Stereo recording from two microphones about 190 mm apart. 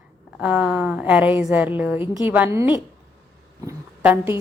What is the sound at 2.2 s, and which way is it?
A woman's voice, 10° right (ahead or behind).